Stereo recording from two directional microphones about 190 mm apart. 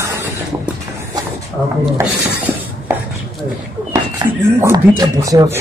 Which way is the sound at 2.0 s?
15° right (ahead or behind).